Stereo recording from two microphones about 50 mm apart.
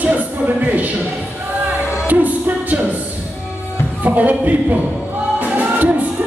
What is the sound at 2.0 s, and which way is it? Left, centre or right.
Music, right.